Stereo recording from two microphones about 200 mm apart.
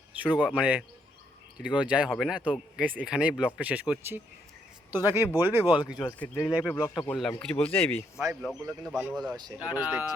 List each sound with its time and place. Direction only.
0.3 s speech: 5° right (ahead or behind)
5.6 s speech: 20° left (ahead or behind)
7.1 s speech: 5° left (ahead or behind)
9.1 s speech: 20° right (ahead or behind)
9.6 s speech: 5° right (ahead or behind)